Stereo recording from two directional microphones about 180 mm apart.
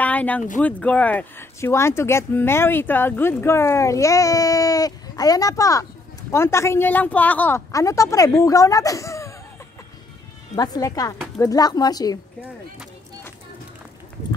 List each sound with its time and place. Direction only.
0.0 s a sound: 10° left (ahead or behind)
0.6 s speech: 10° left (ahead or behind)
10.5 s speech: 20° left (ahead or behind)